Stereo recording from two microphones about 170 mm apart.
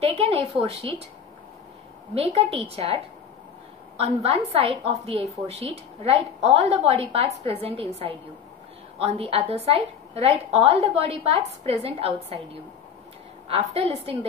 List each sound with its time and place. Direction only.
0.0 s speech: 35° right (ahead or behind)
2.1 s a woman's voice: 35° right (ahead or behind)
13.5 s a woman's voice: 35° right (ahead or behind)